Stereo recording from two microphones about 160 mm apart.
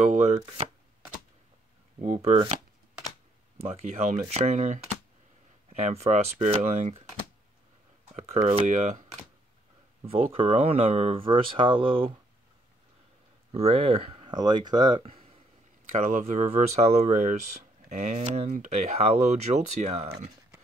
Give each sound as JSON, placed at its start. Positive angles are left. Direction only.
{"t": 0.1, "sound": "chopping", "side_deg": -45}
{"t": 2.0, "sound": "speech", "side_deg": -45}
{"t": 3.7, "sound": "speech", "side_deg": -45}
{"t": 8.1, "sound": "a sound", "side_deg": -40}
{"t": 8.5, "sound": "speech", "side_deg": -45}
{"t": 10.0, "sound": "speech", "side_deg": -35}
{"t": 13.5, "sound": "speech", "side_deg": -40}
{"t": 16.0, "sound": "speech", "side_deg": -50}